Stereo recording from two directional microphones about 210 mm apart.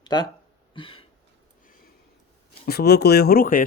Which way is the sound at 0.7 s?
25° left (ahead or behind).